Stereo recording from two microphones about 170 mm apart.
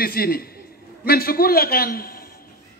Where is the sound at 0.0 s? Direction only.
60° left (ahead or behind).